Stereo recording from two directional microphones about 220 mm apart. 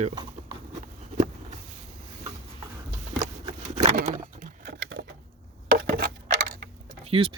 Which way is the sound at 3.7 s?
35° right (ahead or behind).